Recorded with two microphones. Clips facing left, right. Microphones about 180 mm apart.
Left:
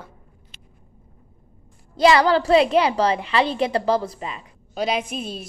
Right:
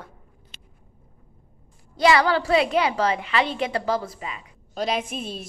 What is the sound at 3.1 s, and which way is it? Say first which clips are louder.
A woman's voice: left 3 dB; 35° left (ahead or behind).